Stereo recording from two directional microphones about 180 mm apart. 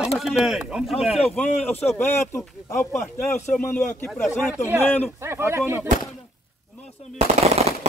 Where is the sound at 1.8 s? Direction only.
15° left (ahead or behind).